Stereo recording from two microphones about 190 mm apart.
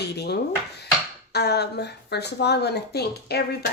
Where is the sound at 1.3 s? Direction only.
60° left (ahead or behind).